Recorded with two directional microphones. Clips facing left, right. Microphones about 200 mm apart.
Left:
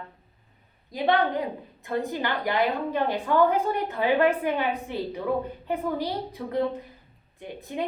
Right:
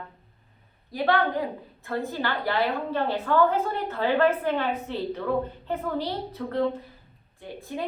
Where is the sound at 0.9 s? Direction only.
20° left (ahead or behind).